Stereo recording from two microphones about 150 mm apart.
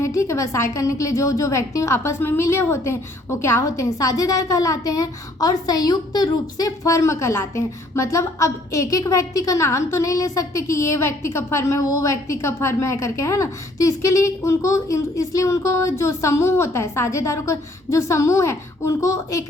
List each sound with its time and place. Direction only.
0.0 s a woman's voice: 20° left (ahead or behind)